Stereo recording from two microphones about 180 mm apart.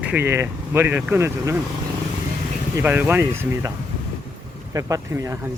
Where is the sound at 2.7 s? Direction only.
10° right (ahead or behind).